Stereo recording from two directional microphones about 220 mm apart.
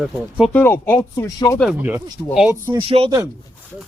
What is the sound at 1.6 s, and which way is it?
Speech, 5° right (ahead or behind).